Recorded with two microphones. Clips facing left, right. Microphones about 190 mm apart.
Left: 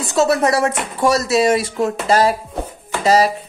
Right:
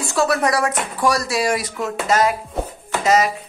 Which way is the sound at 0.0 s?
20° left (ahead or behind).